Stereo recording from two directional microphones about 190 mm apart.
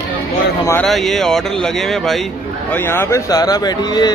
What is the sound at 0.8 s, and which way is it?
Speech, centre (ahead or behind).